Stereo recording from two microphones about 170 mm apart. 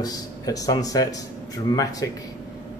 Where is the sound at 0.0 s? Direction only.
20° left (ahead or behind).